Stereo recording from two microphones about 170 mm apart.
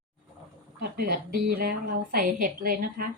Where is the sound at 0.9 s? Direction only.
65° right (ahead or behind).